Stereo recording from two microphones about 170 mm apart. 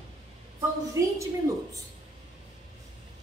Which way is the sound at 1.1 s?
20° right (ahead or behind).